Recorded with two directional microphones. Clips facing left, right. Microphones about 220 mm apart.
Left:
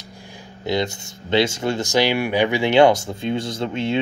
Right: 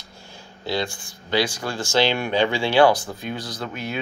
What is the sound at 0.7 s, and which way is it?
Speech, 20° left (ahead or behind).